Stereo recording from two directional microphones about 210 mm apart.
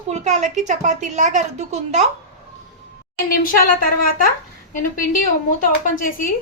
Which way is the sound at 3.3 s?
45° left (ahead or behind).